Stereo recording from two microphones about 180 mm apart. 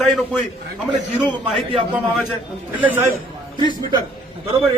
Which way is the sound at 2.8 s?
10° right (ahead or behind).